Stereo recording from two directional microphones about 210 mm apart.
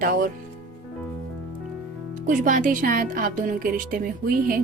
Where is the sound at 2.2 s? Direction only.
40° right (ahead or behind).